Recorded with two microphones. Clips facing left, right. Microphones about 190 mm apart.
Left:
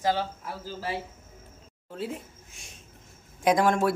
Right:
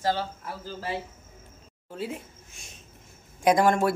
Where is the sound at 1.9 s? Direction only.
Centre (ahead or behind).